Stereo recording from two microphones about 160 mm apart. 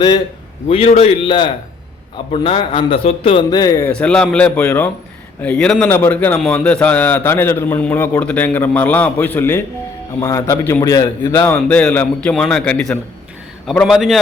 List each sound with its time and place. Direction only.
0.7 s a man's voice: 40° left (ahead or behind); by 14.2 s centre (ahead or behind)